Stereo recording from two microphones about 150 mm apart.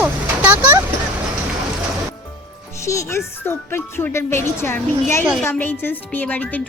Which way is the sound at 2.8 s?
20° left (ahead or behind).